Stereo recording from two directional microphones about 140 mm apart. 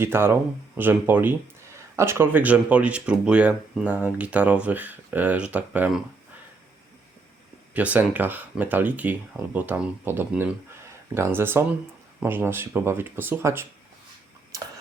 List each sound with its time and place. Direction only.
0.0 s speech: 15° right (ahead or behind)
7.7 s speech: 10° right (ahead or behind)